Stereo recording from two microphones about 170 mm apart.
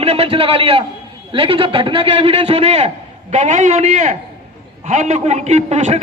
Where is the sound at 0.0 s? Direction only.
35° right (ahead or behind).